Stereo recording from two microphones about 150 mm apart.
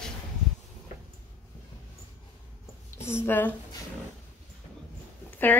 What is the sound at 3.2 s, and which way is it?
Speech, 15° left (ahead or behind).